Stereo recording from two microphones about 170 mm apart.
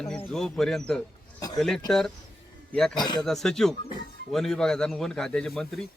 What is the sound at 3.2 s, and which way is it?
Speech, 5° left (ahead or behind).